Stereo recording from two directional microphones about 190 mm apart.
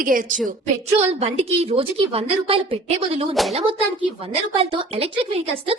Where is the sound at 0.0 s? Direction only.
45° right (ahead or behind).